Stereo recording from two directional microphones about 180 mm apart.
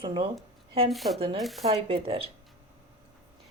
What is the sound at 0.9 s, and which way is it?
Speech, centre (ahead or behind).